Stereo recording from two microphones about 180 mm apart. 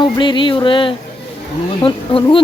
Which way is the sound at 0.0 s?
25° left (ahead or behind).